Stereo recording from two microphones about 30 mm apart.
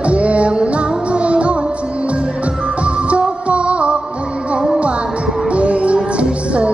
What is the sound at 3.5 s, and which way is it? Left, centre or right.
Music, right.